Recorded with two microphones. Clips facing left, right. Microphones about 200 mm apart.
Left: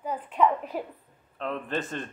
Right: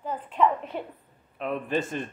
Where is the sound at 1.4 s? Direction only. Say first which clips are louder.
Right 3 dB; 10° right (ahead or behind).